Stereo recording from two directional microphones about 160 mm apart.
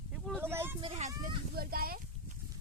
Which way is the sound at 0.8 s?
40° right (ahead or behind).